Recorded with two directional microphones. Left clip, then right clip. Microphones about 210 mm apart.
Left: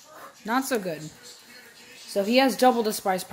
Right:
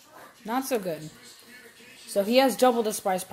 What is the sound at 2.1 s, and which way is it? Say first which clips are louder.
Speech: even; 10° left (ahead or behind).